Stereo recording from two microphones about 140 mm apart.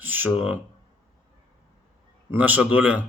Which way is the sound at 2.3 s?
10° right (ahead or behind).